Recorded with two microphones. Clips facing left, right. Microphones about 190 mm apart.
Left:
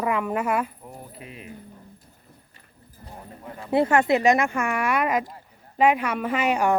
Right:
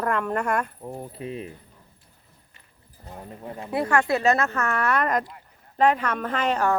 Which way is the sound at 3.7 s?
25° left (ahead or behind).